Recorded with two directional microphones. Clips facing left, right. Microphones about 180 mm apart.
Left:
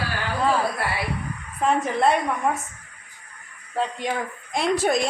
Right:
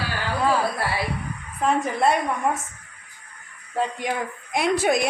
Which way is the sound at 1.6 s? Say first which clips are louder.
Even; centre (ahead or behind).